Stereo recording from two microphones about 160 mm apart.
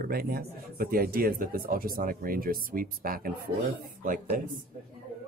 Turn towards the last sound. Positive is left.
turn(degrees=-60)  # may be behind; listen again after turning